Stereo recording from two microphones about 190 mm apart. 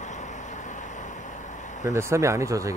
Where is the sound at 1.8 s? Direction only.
15° right (ahead or behind).